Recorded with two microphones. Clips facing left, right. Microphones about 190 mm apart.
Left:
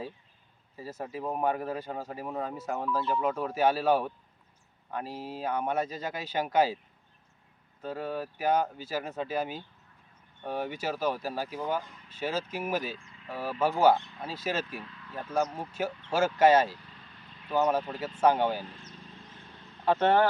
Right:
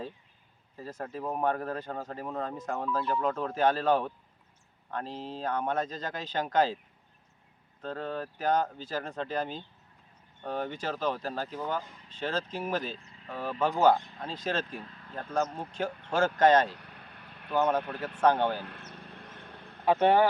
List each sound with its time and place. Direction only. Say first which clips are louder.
0.8 s speech: left 1 dB; 10° left (ahead or behind)
7.8 s speech: left 1 dB; 10° left (ahead or behind)
13.0 s a sound: even; 40° right (ahead or behind)
13.2 s speech: left 1 dB; 10° left (ahead or behind)
14.8 s vehicle: left 1 dB; 40° right (ahead or behind)
15.1 s speech: left 1 dB; 10° left (ahead or behind)
16.7 s vehicle: right 2 dB; 60° right (ahead or behind)
17.5 s speech: even; 10° left (ahead or behind)
18.6 s a sound: right 1 dB; 60° right (ahead or behind)
19.8 s speech: right 1 dB; 15° right (ahead or behind)